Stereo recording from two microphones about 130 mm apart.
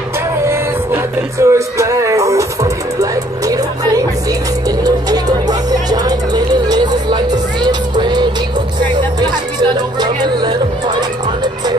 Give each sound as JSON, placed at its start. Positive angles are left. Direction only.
{"t": 0.5, "sound": "music", "side_deg": -20}